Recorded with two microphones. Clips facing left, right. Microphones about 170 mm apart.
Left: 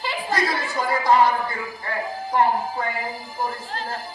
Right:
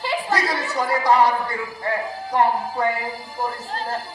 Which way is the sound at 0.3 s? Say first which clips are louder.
Right 1 dB; 75° right (ahead or behind).